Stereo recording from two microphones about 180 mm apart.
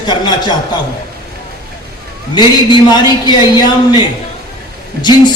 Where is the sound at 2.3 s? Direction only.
25° left (ahead or behind).